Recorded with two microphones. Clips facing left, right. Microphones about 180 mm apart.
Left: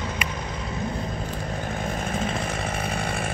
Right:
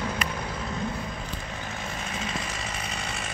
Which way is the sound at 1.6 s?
50° left (ahead or behind).